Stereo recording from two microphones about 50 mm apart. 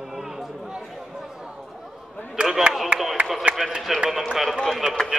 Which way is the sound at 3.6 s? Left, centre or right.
Centre.